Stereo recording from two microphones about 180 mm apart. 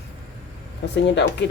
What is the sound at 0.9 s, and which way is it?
Speech, 75° left (ahead or behind).